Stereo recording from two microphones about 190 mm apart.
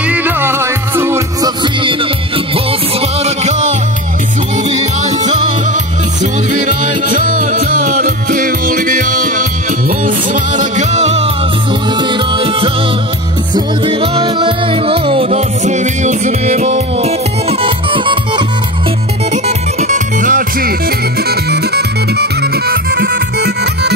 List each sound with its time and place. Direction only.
0.0 s music: 10° right (ahead or behind); by 3.7 s 35° right (ahead or behind)
6.6 s music: 40° right (ahead or behind); by 18.4 s 25° right (ahead or behind)
19.3 s music: 35° right (ahead or behind)
21.2 s music: 55° right (ahead or behind)